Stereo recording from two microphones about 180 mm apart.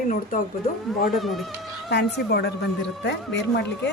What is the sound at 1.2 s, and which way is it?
Speech, centre (ahead or behind).